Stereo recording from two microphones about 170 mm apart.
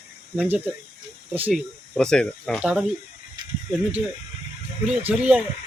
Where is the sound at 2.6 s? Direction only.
5° right (ahead or behind).